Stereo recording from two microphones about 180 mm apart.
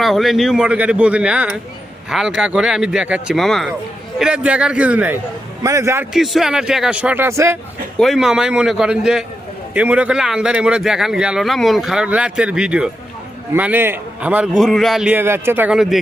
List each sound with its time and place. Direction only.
0.0 s a man's voice: centre (ahead or behind)
6.1 s a man's voice: centre (ahead or behind)
7.9 s a man's voice: centre (ahead or behind)